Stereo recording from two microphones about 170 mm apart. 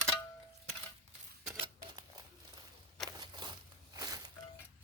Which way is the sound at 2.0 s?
25° right (ahead or behind).